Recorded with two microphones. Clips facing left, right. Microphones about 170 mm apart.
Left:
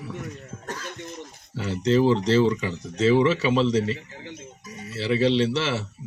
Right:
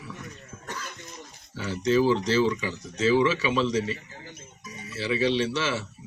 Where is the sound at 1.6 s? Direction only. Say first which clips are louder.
Left 2 dB; 25° left (ahead or behind).